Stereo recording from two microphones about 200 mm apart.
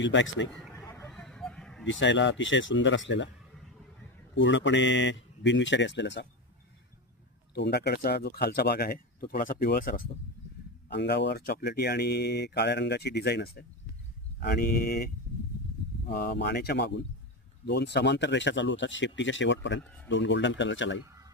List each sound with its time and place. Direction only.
0.0 s speech: 65° left (ahead or behind)
1.0 s a sound: 5° left (ahead or behind)
1.9 s speech: 65° left (ahead or behind)
4.4 s speech: 65° left (ahead or behind)
7.5 s speech: 55° left (ahead or behind)
10.9 s speech: 55° left (ahead or behind)
16.1 s speech: 50° left (ahead or behind)